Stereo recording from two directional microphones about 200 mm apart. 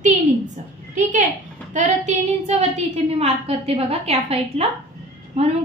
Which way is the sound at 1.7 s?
35° right (ahead or behind).